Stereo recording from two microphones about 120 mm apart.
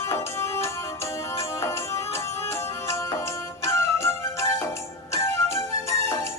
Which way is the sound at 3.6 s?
25° left (ahead or behind).